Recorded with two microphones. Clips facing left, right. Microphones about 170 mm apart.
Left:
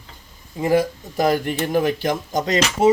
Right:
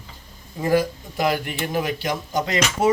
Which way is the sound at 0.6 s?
20° left (ahead or behind).